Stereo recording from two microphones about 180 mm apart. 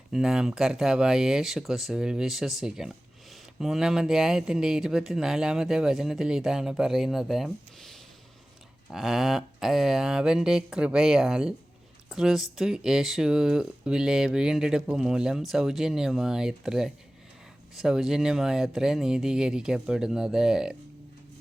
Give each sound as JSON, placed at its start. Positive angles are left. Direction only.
{"t": 0.1, "sound": "speech", "side_deg": -5}